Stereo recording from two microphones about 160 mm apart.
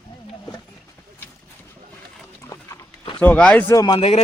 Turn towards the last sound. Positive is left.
turn(degrees=35)  # may be behind; listen again after turning